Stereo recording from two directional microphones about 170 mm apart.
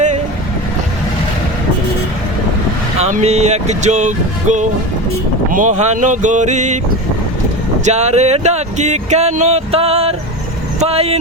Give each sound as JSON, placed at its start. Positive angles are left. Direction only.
{"t": 3.0, "sound": "speech", "side_deg": -40}
{"t": 7.9, "sound": "speech", "side_deg": -40}